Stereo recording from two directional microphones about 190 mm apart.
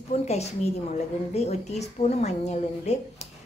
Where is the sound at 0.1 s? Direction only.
35° left (ahead or behind).